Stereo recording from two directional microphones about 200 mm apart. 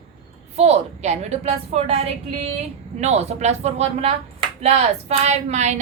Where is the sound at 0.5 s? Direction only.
30° right (ahead or behind).